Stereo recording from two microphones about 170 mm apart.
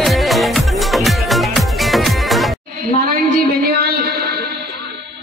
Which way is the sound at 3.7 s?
70° right (ahead or behind).